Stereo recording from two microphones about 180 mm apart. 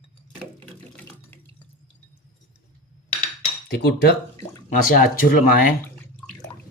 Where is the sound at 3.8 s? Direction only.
65° left (ahead or behind).